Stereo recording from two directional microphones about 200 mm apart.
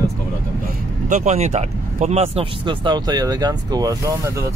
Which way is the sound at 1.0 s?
35° right (ahead or behind).